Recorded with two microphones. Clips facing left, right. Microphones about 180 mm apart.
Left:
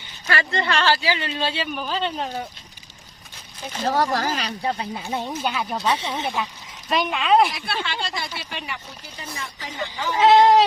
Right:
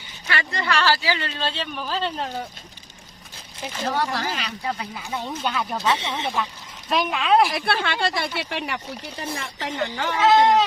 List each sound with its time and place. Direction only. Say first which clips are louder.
0.5 s a woman's voice: even; 25° left (ahead or behind); by 2.5 s centre (ahead or behind)
3.8 s speech: left 4 dB; 40° left (ahead or behind); by 5.3 s 25° left (ahead or behind)
5.3 s speech: left 1 dB; 10° left (ahead or behind)
7.5 s speech: right 4 dB; 55° right (ahead or behind)
9.2 s speech: right 3 dB; 30° right (ahead or behind)
9.6 s speech: right 4 dB; 65° right (ahead or behind)
10.2 s speech: left 3 dB; 30° left (ahead or behind)